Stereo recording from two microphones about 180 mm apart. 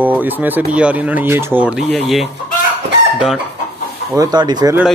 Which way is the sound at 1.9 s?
5° left (ahead or behind).